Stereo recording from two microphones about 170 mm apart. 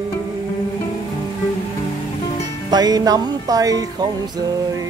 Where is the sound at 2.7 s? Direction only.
25° right (ahead or behind).